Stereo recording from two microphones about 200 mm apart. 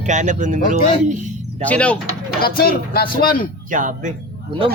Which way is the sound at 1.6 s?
5° left (ahead or behind).